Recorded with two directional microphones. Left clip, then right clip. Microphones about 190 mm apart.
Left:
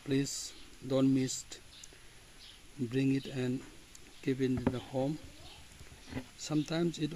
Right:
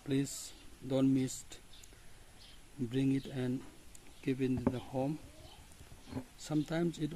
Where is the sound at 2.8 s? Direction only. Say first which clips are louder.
Left 2 dB; 5° left (ahead or behind).